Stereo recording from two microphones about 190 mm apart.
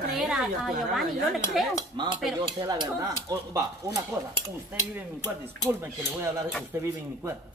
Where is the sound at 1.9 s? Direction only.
25° right (ahead or behind).